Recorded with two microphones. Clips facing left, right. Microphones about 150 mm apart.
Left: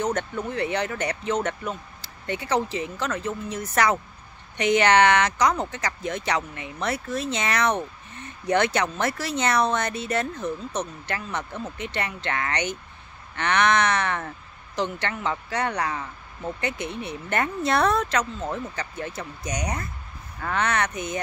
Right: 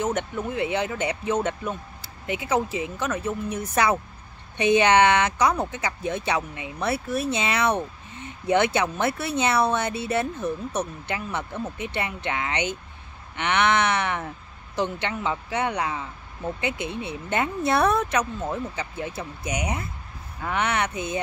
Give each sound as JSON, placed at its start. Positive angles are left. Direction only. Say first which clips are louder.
{"t": 0.5, "sound": "speech", "louder": "right 1 dB", "side_deg": -15}
{"t": 16.7, "sound": "speech", "louder": "right 1 dB", "side_deg": -20}